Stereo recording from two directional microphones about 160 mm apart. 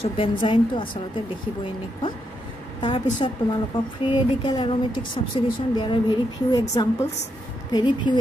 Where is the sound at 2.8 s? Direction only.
30° left (ahead or behind).